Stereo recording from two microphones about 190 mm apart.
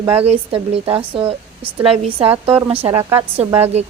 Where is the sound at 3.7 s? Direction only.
35° right (ahead or behind).